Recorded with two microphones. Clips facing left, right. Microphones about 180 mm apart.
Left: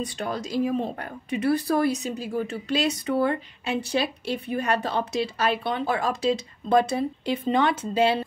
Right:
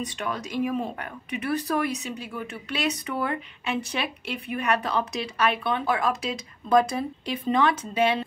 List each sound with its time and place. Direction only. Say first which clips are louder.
0.0 s speech: left 2 dB; 35° left (ahead or behind)